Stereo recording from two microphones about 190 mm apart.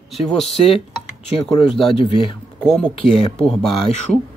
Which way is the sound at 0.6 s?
30° left (ahead or behind).